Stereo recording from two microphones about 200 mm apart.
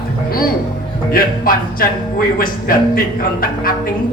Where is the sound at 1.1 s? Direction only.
45° left (ahead or behind).